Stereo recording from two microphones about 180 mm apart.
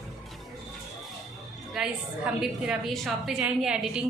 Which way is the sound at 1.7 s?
5° right (ahead or behind).